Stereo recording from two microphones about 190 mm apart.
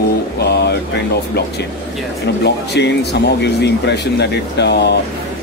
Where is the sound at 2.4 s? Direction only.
65° left (ahead or behind).